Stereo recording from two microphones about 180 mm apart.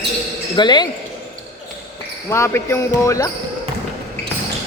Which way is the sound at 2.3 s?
15° left (ahead or behind).